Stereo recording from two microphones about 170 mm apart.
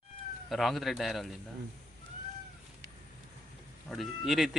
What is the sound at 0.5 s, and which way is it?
Speech, centre (ahead or behind).